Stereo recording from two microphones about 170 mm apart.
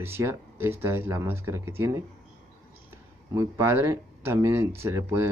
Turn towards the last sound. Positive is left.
turn(degrees=-15)  # may be behind; listen again after turning